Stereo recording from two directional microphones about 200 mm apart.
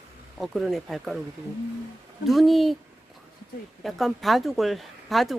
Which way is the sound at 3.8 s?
Centre (ahead or behind).